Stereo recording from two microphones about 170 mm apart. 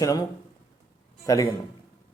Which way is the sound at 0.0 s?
20° left (ahead or behind).